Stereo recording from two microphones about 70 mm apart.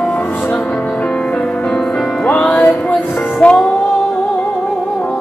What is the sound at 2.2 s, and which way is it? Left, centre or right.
Music, centre.